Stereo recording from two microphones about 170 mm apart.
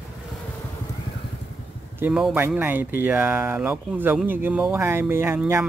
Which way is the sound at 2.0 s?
5° right (ahead or behind).